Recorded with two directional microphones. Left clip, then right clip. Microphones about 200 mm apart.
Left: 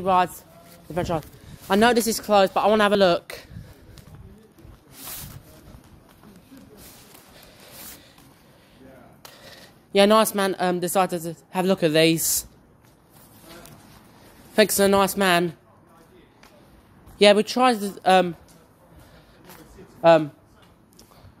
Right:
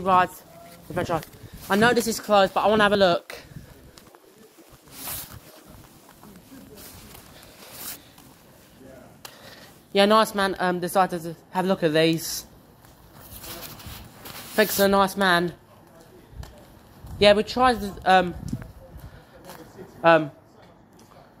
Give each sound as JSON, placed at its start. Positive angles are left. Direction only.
{"t": 0.0, "sound": "a woman's voice", "side_deg": 35}
{"t": 9.6, "sound": "a woman's voice", "side_deg": 40}
{"t": 14.5, "sound": "a woman's voice", "side_deg": 40}
{"t": 17.2, "sound": "a woman's voice", "side_deg": 40}
{"t": 20.0, "sound": "a man's voice", "side_deg": 45}